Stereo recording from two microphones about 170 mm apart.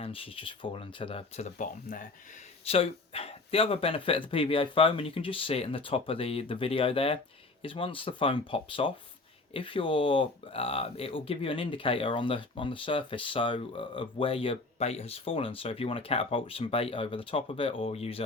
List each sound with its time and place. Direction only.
0.0 s speech: 35° left (ahead or behind); by 2.0 s 50° left (ahead or behind)
2.6 s speech: 35° left (ahead or behind)